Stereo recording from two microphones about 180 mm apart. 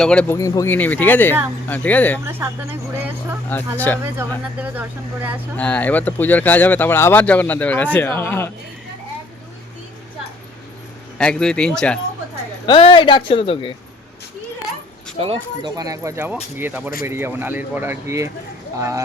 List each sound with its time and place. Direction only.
0.0 s speech: 5° left (ahead or behind)
0.3 s speech: 15° left (ahead or behind)
2.2 s speech: 15° right (ahead or behind)
3.8 s speech: 10° left (ahead or behind)
4.6 s speech: 10° right (ahead or behind)
5.5 s speech: 10° left (ahead or behind)
11.2 s speech: 5° left (ahead or behind)
12.6 s speech: 30° left (ahead or behind)
15.2 s speech: 30° right (ahead or behind)